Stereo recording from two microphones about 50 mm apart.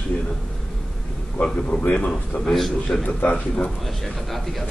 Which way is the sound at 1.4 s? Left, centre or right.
Left.